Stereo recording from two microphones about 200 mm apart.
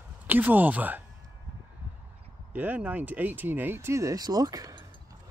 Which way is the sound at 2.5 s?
10° right (ahead or behind).